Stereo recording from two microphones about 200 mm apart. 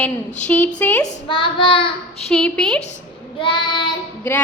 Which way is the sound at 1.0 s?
25° left (ahead or behind).